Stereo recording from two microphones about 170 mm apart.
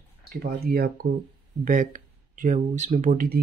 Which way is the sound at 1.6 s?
55° right (ahead or behind).